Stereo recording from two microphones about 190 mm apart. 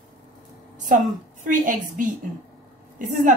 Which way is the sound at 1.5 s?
45° right (ahead or behind).